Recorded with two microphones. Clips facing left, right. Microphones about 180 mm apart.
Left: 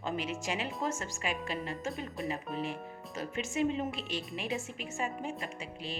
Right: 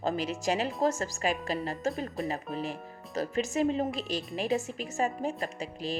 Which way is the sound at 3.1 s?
40° right (ahead or behind).